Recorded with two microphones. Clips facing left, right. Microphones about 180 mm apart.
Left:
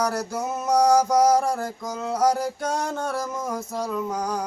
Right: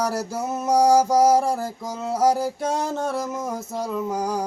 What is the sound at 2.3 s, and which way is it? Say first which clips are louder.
Music: right 2 dB; 5° right (ahead or behind).